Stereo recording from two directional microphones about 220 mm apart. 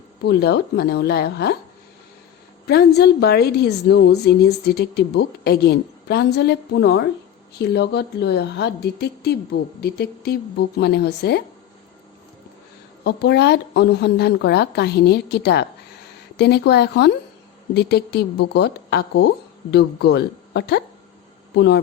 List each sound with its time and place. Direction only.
0.3 s a woman's voice: 50° left (ahead or behind)
2.6 s a woman's voice: 45° left (ahead or behind)
13.1 s a woman's voice: 50° left (ahead or behind)